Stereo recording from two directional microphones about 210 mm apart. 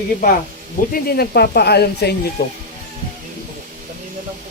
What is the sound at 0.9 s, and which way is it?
Speech, 50° left (ahead or behind).